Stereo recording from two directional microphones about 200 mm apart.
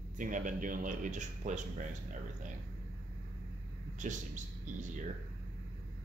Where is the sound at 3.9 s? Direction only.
40° right (ahead or behind).